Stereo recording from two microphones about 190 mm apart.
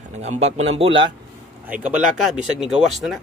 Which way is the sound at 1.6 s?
5° right (ahead or behind).